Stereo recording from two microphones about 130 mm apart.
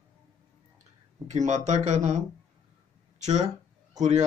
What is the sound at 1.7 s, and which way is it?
Speech, 60° right (ahead or behind).